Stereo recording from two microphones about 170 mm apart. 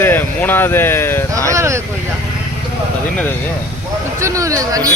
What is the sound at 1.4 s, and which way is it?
Vehicle, 15° right (ahead or behind).